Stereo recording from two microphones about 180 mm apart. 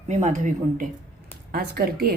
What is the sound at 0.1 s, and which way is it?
Speech, 40° right (ahead or behind).